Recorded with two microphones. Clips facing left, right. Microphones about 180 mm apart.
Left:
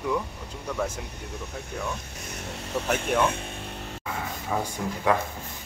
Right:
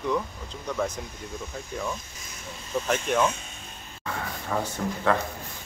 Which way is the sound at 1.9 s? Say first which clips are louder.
Left 1 dB; 65° left (ahead or behind).